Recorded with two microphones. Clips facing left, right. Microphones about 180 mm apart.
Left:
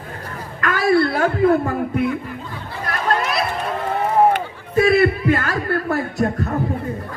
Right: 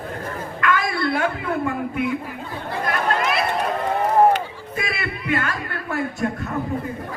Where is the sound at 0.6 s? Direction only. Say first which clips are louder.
Left 6 dB; 40° left (ahead or behind).